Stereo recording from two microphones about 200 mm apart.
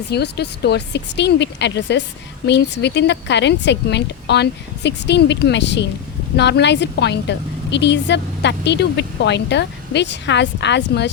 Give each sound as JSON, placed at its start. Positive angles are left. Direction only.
{"t": 0.1, "sound": "a woman's voice", "side_deg": 55}